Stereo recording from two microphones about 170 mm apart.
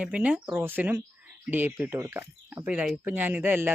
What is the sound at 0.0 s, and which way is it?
Speech, 10° right (ahead or behind).